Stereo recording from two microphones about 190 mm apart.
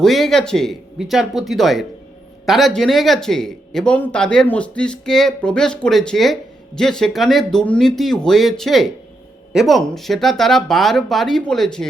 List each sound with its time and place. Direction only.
0.0 s speech: centre (ahead or behind)